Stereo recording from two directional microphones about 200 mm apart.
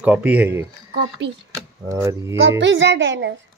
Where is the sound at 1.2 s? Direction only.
55° right (ahead or behind).